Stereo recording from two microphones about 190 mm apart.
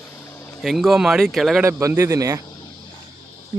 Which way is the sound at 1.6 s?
15° right (ahead or behind).